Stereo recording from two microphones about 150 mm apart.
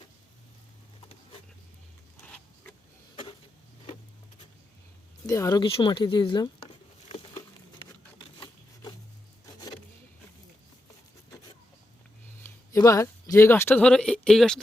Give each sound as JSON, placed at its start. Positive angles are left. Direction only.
{"t": 5.2, "sound": "speech", "side_deg": 25}
{"t": 5.7, "sound": "speech", "side_deg": 35}
{"t": 12.7, "sound": "speech", "side_deg": 20}